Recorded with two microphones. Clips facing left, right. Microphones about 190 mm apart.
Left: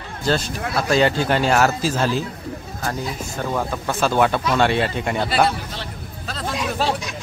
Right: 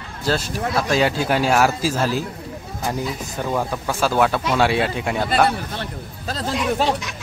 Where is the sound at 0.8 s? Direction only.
5° right (ahead or behind).